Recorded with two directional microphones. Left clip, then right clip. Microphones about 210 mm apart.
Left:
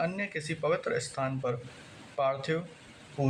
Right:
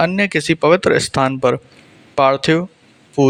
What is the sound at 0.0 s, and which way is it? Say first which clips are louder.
Speech: right 17 dB; 50° right (ahead or behind).